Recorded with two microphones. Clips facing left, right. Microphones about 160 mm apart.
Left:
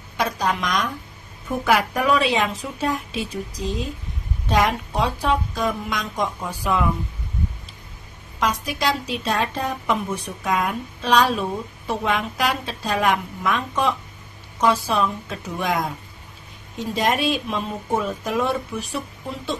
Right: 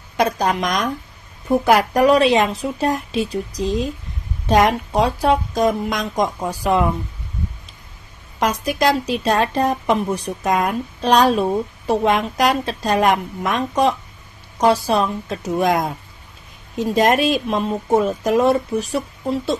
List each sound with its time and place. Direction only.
0.2 s a woman's voice: 45° right (ahead or behind)
8.4 s a woman's voice: 45° right (ahead or behind)
16.9 s a woman's voice: 45° right (ahead or behind)